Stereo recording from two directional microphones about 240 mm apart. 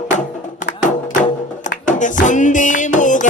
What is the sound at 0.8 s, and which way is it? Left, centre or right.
Music, left.